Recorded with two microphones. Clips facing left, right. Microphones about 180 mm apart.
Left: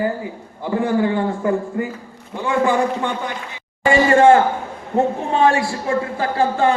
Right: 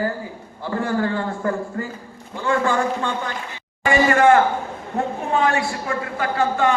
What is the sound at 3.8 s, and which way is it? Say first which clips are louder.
A man's voice: left 3 dB; 25° left (ahead or behind).